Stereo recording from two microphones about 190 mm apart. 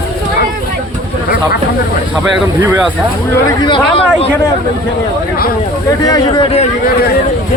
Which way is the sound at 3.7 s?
25° left (ahead or behind).